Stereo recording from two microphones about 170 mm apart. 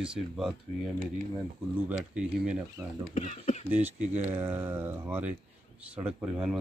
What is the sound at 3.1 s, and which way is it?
Speech, 40° left (ahead or behind).